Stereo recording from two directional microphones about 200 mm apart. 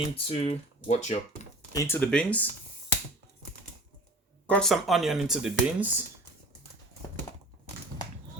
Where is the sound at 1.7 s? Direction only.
15° left (ahead or behind).